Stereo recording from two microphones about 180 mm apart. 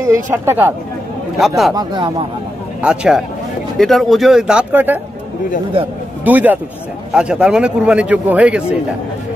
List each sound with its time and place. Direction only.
0.0 s speech: 15° right (ahead or behind)
1.8 s speech: 25° right (ahead or behind)
2.8 s speech: 5° right (ahead or behind)
6.2 s speech: 10° right (ahead or behind)